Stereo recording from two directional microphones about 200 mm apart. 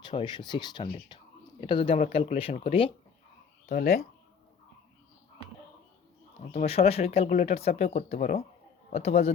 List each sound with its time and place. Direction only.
0.0 s speech: 25° left (ahead or behind)
6.5 s speech: 30° left (ahead or behind)